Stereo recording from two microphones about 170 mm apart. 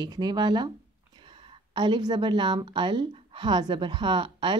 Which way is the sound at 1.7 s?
25° right (ahead or behind).